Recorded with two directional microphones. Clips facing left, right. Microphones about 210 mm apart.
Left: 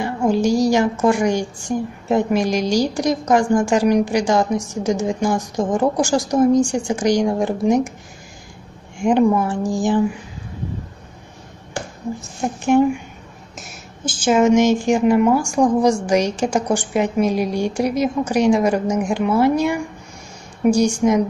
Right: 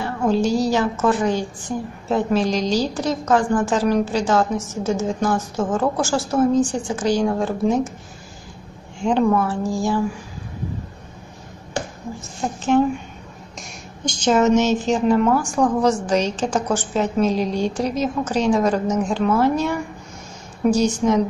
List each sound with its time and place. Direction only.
0.0 s a woman's voice: 10° left (ahead or behind)
8.9 s a woman's voice: 15° left (ahead or behind)
12.6 s a woman's voice: 10° left (ahead or behind)